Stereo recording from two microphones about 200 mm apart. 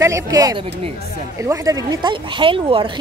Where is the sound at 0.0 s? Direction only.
15° right (ahead or behind).